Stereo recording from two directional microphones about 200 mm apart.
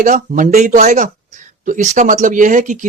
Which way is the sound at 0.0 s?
40° right (ahead or behind).